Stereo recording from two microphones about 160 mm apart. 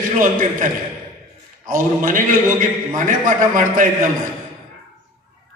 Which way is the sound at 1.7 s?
55° right (ahead or behind).